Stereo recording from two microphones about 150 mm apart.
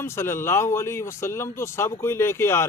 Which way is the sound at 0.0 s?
15° left (ahead or behind).